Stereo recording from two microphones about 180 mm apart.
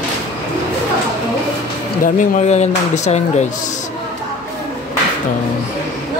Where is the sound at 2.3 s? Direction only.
40° left (ahead or behind).